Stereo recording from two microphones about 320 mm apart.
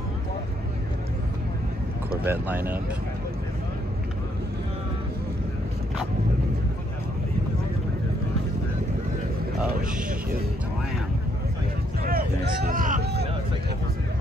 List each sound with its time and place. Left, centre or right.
2.2 s speech: centre
12.0 s speech: right